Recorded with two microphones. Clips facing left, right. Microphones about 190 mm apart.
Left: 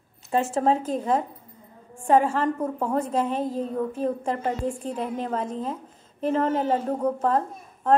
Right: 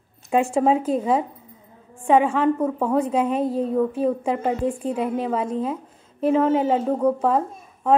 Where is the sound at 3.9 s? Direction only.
10° right (ahead or behind).